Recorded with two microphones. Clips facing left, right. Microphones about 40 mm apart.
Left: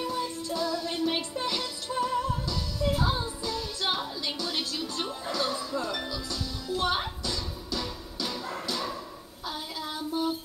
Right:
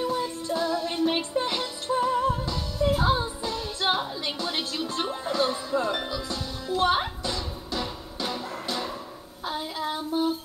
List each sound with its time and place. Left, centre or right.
0.0 s music: right
9.5 s child singing: right